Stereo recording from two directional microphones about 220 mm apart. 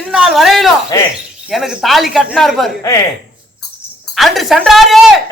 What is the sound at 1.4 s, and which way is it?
A man's voice, centre (ahead or behind).